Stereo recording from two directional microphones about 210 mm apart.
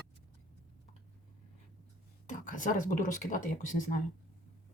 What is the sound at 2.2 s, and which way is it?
Speech, 35° left (ahead or behind).